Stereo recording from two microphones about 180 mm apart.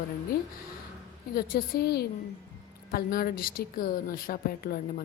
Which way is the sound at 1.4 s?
55° left (ahead or behind).